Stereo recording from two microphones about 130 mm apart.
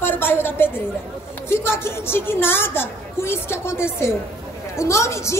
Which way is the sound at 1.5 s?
20° left (ahead or behind).